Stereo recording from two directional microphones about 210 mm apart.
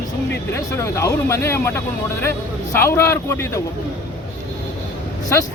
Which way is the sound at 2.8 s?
10° left (ahead or behind).